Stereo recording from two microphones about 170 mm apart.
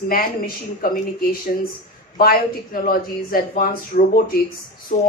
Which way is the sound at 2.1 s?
55° left (ahead or behind).